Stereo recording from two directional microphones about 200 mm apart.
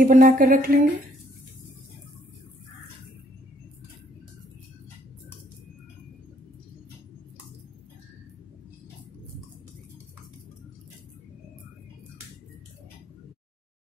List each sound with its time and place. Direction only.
0.0 s speech: 45° right (ahead or behind)